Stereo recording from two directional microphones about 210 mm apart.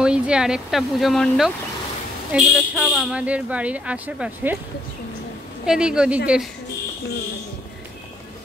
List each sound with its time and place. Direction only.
0.0 s speech: 5° right (ahead or behind)
5.7 s speech: 5° right (ahead or behind)